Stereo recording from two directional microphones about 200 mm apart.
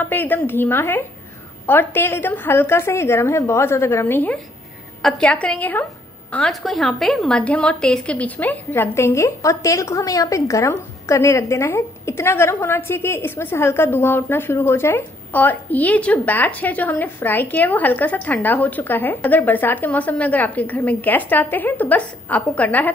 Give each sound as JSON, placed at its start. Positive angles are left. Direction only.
{"t": 0.0, "sound": "a woman's voice", "side_deg": 10}